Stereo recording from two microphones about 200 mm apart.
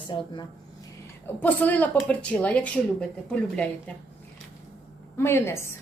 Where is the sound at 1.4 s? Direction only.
10° left (ahead or behind).